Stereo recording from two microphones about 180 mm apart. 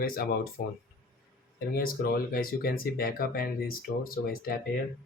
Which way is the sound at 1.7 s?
55° left (ahead or behind).